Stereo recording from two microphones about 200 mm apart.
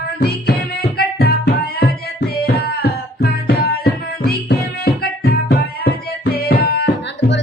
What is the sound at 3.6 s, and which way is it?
Music, 50° left (ahead or behind).